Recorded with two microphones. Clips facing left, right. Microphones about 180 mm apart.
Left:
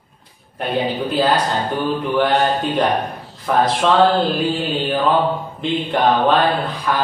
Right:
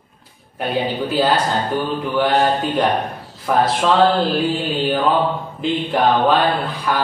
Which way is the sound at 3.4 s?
Centre (ahead or behind).